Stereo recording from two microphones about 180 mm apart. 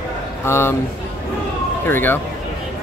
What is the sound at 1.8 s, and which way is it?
Speech, 10° left (ahead or behind).